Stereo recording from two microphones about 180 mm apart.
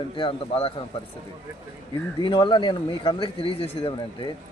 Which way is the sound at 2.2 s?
25° left (ahead or behind).